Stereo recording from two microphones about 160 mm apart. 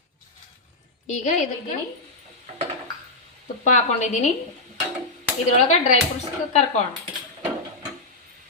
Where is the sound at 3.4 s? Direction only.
50° left (ahead or behind).